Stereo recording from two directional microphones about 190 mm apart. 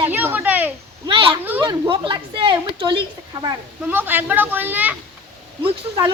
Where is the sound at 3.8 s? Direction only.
10° right (ahead or behind).